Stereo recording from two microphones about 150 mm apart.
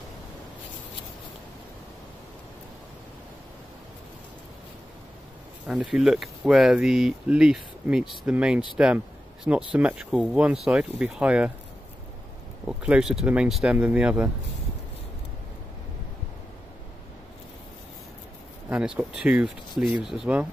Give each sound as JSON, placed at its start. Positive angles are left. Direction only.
{"t": 5.7, "sound": "speech", "side_deg": -5}
{"t": 12.6, "sound": "speech", "side_deg": -5}
{"t": 18.7, "sound": "speech", "side_deg": -5}